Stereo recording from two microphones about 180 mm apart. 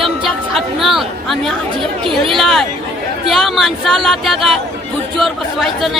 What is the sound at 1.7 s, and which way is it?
Speech, 30° right (ahead or behind).